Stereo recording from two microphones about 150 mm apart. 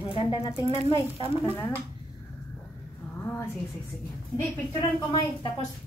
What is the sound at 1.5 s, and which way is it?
Speech, 15° left (ahead or behind).